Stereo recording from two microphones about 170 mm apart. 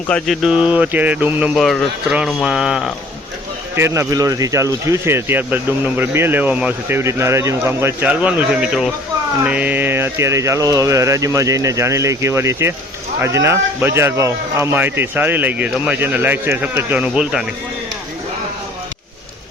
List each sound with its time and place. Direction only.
0.1 s speech: centre (ahead or behind)
3.8 s speech: 15° right (ahead or behind)